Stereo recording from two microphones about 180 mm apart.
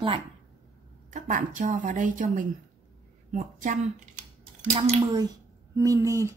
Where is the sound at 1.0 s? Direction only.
45° right (ahead or behind).